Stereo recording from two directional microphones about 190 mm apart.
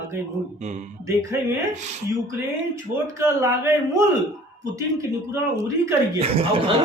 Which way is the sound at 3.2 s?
15° right (ahead or behind).